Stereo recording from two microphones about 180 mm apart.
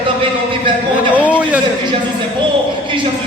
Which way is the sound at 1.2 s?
5° right (ahead or behind).